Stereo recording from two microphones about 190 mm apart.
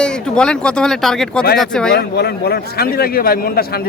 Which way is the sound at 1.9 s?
60° left (ahead or behind).